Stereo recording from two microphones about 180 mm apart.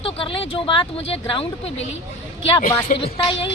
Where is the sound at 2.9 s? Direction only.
30° left (ahead or behind).